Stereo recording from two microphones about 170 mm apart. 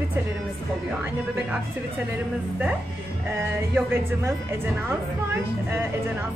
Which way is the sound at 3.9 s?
15° right (ahead or behind).